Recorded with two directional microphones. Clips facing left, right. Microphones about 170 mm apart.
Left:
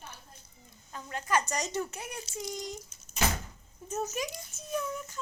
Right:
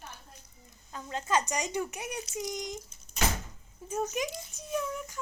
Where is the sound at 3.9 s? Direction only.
20° right (ahead or behind).